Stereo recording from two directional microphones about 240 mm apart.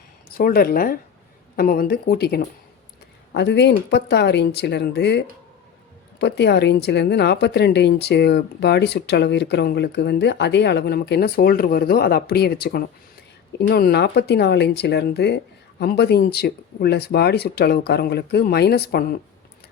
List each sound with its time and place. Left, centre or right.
0.3 s a woman's voice: left